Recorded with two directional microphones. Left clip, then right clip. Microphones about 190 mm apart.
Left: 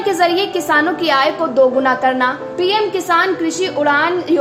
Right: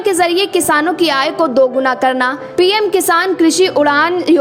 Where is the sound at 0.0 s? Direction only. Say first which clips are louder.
Right 2 dB; 35° right (ahead or behind).